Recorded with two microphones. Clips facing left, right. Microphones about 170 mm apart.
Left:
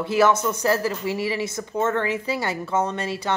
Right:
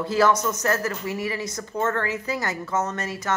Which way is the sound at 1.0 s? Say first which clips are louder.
Left 3 dB; 25° left (ahead or behind).